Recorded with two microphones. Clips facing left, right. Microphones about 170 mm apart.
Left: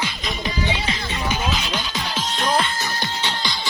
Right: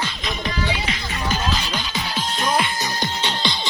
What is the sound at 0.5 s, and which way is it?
Music, 20° left (ahead or behind).